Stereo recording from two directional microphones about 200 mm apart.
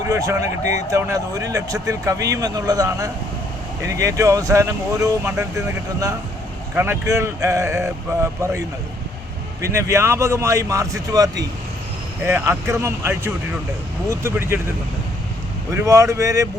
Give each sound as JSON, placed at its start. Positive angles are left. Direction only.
{"t": 0.1, "sound": "speech", "side_deg": -15}
{"t": 15.7, "sound": "speech", "side_deg": -15}